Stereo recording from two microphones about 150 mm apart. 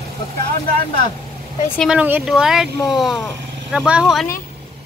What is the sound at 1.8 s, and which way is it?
Speech, 5° right (ahead or behind).